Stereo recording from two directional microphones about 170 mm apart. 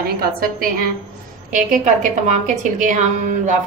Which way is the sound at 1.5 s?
45° right (ahead or behind).